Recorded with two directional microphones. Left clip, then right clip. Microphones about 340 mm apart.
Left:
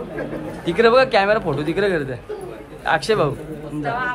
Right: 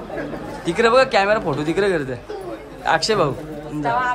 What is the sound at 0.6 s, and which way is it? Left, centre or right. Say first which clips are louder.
A man's voice: left 1 dB; centre.